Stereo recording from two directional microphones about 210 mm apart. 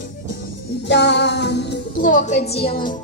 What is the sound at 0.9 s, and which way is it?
Music, 55° left (ahead or behind).